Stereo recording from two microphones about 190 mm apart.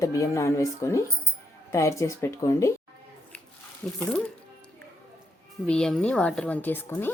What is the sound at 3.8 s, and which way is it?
Speech, 5° left (ahead or behind).